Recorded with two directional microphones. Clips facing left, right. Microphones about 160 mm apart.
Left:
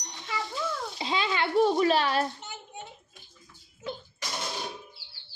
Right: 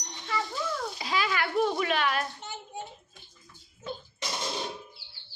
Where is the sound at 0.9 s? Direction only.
25° left (ahead or behind).